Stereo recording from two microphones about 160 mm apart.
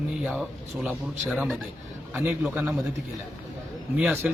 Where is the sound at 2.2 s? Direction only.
15° right (ahead or behind).